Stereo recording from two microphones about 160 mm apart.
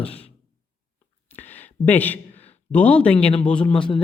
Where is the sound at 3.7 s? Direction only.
30° left (ahead or behind).